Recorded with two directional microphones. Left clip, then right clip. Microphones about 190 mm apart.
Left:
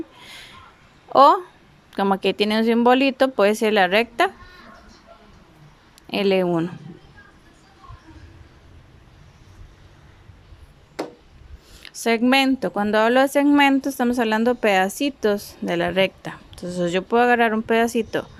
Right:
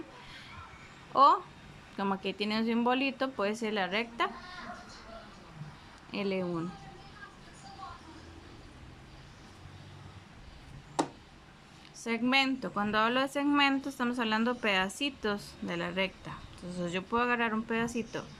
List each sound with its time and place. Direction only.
1.1 s speech: 40° left (ahead or behind)
6.1 s speech: 40° left (ahead or behind)
11.9 s speech: 45° left (ahead or behind)